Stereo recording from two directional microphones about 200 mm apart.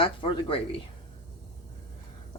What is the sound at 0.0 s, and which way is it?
Speech, 25° left (ahead or behind).